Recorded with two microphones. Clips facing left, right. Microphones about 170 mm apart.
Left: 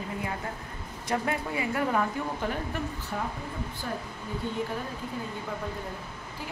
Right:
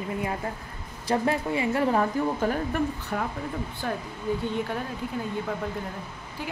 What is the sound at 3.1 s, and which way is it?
Speech, 60° right (ahead or behind).